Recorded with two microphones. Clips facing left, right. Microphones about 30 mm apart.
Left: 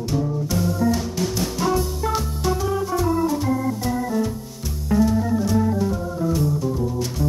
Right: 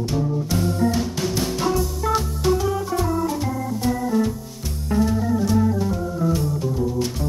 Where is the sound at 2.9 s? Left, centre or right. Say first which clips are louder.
Left 2 dB; centre.